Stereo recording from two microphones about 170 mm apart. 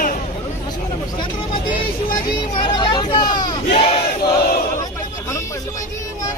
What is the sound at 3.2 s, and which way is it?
Battle cry, 25° left (ahead or behind).